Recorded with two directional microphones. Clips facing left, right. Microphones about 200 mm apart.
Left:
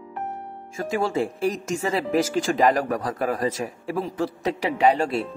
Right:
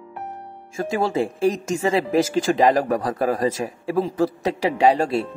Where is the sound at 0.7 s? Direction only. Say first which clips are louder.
Right 2 dB; 25° right (ahead or behind).